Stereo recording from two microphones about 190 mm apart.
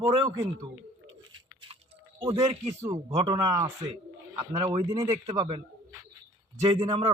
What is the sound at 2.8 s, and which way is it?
Speech, 15° right (ahead or behind).